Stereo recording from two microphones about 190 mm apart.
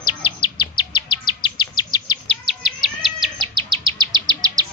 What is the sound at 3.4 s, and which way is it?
Bird vocalization, 25° right (ahead or behind).